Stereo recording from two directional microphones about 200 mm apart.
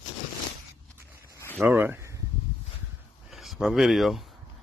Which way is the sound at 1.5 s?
10° right (ahead or behind).